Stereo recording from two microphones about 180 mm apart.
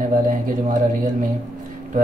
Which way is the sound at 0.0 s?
45° right (ahead or behind).